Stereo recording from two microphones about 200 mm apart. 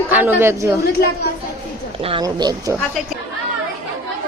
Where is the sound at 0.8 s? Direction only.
55° left (ahead or behind).